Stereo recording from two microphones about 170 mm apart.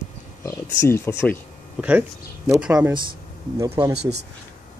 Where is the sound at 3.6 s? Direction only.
20° right (ahead or behind).